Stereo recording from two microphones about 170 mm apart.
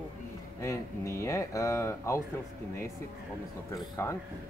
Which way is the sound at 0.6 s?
15° left (ahead or behind).